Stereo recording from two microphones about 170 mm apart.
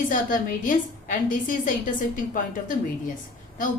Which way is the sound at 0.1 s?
50° left (ahead or behind).